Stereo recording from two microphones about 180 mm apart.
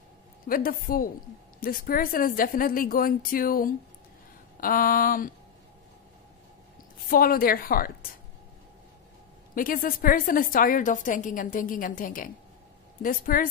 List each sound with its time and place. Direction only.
0.5 s a woman's voice: 50° left (ahead or behind)
7.1 s a woman's voice: 55° left (ahead or behind)
9.6 s a woman's voice: 50° left (ahead or behind)